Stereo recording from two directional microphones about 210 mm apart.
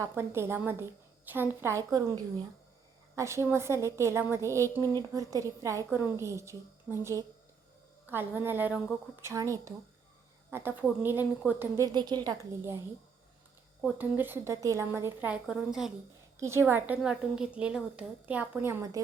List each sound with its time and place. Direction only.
0.0 s a woman's voice: 10° right (ahead or behind)
13.8 s a woman's voice: 10° right (ahead or behind)